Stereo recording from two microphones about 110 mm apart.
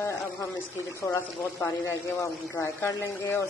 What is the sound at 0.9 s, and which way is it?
Speech, 25° left (ahead or behind).